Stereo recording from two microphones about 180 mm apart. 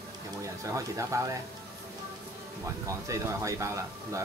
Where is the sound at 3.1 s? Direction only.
15° right (ahead or behind).